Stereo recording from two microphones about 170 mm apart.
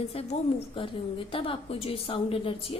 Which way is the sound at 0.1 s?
35° left (ahead or behind).